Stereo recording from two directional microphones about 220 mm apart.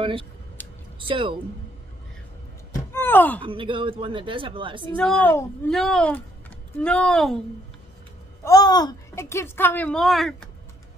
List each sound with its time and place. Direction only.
0.0 s speech: 25° right (ahead or behind)
0.6 s a sound: 10° left (ahead or behind)
0.9 s speech: 25° right (ahead or behind)
2.9 s a sound: 10° left (ahead or behind)
3.4 s speech: 25° right (ahead or behind)
5.2 s a child's voice: 10° left (ahead or behind)
5.7 s speech: centre (ahead or behind)
8.5 s a child's voice: 15° left (ahead or behind); by 10.5 s centre (ahead or behind)